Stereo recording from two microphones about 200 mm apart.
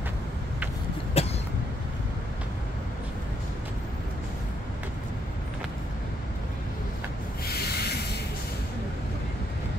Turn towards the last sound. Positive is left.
turn(degrees=55)  # may be behind; listen again after turning